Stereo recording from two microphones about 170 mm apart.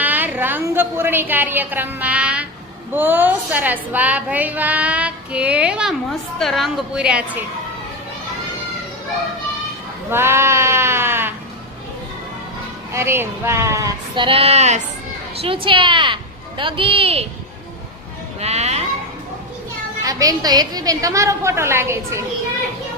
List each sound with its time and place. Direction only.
0.0 s a woman's voice: 10° right (ahead or behind)
10.1 s sheep: 15° right (ahead or behind)
12.9 s a woman's voice: 15° right (ahead or behind)
14.3 s a woman's voice: 35° right (ahead or behind)
18.3 s a woman's voice: 40° right (ahead or behind)
20.0 s a woman's voice: 20° right (ahead or behind)